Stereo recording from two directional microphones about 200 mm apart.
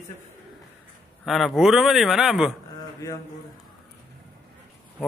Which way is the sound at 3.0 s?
15° left (ahead or behind).